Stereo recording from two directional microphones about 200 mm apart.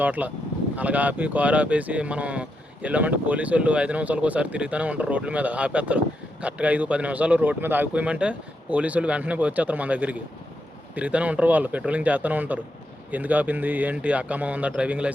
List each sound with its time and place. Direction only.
0.0 s speech: 10° right (ahead or behind)